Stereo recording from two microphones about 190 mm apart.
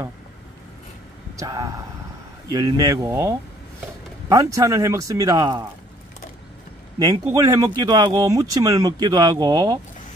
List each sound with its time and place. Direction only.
1.3 s speech: 15° right (ahead or behind)
7.0 s speech: 20° right (ahead or behind)